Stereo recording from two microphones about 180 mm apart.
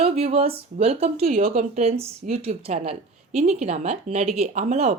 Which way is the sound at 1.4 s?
50° right (ahead or behind).